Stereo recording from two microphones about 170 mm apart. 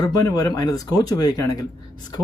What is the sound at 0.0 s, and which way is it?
Speech, 20° left (ahead or behind).